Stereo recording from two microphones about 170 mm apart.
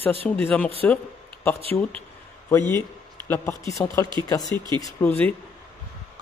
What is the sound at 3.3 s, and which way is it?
A man's voice, 20° left (ahead or behind).